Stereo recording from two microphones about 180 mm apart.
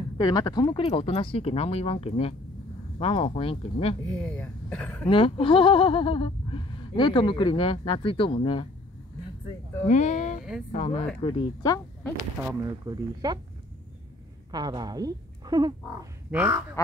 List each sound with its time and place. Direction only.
0.2 s speech: 25° left (ahead or behind)
4.1 s speech: 5° left (ahead or behind)
5.0 s speech: 30° left (ahead or behind)
9.8 s speech: 40° left (ahead or behind)
11.2 s speech: 20° left (ahead or behind)
12.4 s speech: 20° right (ahead or behind)
14.5 s speech: 25° right (ahead or behind)
16.3 s speech: 10° right (ahead or behind)